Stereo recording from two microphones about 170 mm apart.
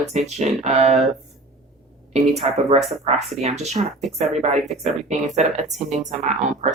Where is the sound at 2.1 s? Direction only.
40° right (ahead or behind).